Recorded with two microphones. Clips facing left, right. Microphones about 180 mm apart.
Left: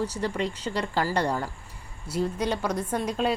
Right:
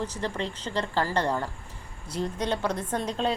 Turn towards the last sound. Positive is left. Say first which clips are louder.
# left 1 dB
turn(degrees=10)  # may be behind; listen again after turning